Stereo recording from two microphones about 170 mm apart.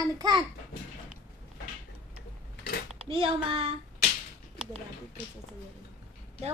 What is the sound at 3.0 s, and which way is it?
Speech, 30° right (ahead or behind).